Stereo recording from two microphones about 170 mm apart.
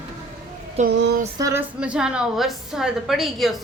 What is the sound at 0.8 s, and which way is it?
Speech, 40° right (ahead or behind).